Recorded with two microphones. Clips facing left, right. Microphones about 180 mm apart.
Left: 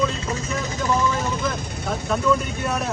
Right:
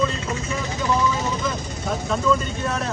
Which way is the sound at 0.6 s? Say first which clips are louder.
Even; 45° left (ahead or behind).